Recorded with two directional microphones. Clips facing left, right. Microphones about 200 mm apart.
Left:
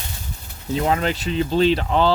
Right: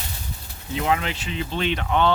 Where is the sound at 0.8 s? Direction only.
40° left (ahead or behind).